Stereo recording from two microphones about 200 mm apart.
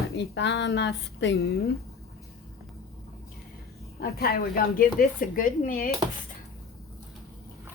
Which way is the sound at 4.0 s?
50° left (ahead or behind).